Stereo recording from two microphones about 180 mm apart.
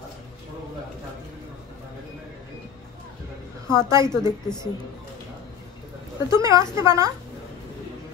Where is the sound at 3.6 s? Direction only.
15° right (ahead or behind).